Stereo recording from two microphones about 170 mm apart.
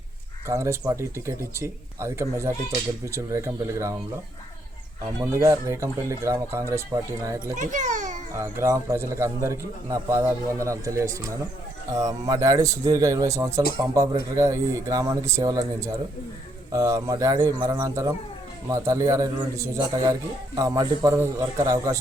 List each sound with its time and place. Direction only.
0.4 s a man's voice: 15° right (ahead or behind)
5.2 s a man's voice: 20° right (ahead or behind)
7.5 s a sound: 45° right (ahead or behind)
8.4 s a man's voice: 15° right (ahead or behind)